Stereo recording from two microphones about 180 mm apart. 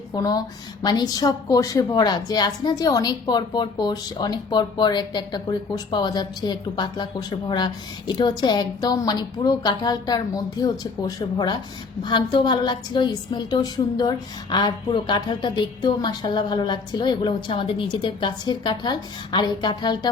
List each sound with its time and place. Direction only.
0.1 s speech: 20° left (ahead or behind)